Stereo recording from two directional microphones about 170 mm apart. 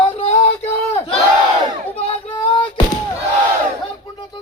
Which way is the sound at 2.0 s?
35° left (ahead or behind).